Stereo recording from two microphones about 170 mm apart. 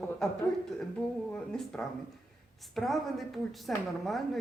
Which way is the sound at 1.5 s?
5° left (ahead or behind).